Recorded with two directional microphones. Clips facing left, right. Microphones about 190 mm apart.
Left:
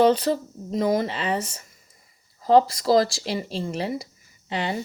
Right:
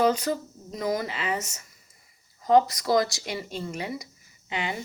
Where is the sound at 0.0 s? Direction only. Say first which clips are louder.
Left 5 dB; 30° left (ahead or behind).